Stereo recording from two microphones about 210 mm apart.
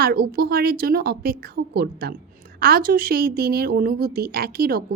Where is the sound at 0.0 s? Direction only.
45° right (ahead or behind).